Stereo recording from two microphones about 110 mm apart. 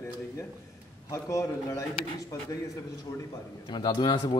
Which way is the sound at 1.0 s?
30° left (ahead or behind).